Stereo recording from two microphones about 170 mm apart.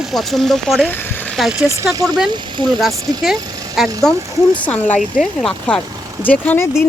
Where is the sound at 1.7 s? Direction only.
15° right (ahead or behind).